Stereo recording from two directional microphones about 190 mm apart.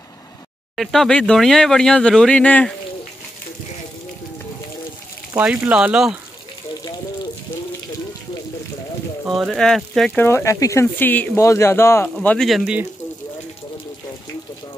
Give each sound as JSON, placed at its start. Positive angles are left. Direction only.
{"t": 0.7, "sound": "speech", "side_deg": 0}
{"t": 5.3, "sound": "speech", "side_deg": -5}
{"t": 9.2, "sound": "speech", "side_deg": 0}